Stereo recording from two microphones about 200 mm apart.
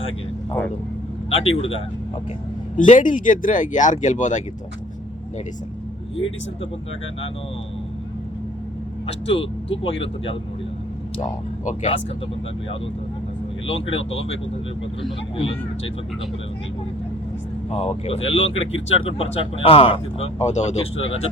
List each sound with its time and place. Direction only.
1.3 s speech: 30° left (ahead or behind)
2.7 s speech: 40° left (ahead or behind)
9.0 s speech: 30° left (ahead or behind)
11.6 s speech: 35° left (ahead or behind)
13.7 s speech: 30° left (ahead or behind)
17.7 s speech: 30° left (ahead or behind)